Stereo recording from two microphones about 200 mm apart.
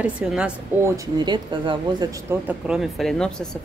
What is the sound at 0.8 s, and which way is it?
Speech, 20° right (ahead or behind).